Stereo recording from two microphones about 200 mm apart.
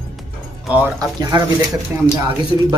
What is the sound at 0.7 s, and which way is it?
Speech, 10° right (ahead or behind).